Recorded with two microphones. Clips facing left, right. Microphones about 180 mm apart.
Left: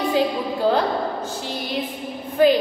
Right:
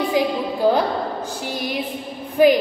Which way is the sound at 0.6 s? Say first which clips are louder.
Right 2 dB; 10° right (ahead or behind).